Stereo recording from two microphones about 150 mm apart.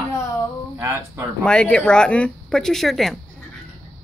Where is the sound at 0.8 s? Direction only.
20° right (ahead or behind).